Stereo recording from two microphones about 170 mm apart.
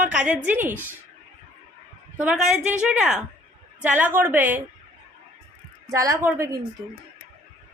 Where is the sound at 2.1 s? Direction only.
5° right (ahead or behind).